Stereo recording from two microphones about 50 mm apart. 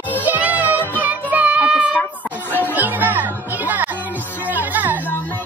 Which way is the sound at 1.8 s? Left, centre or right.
Right.